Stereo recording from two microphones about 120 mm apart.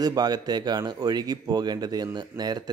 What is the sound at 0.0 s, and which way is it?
Speech, 35° right (ahead or behind).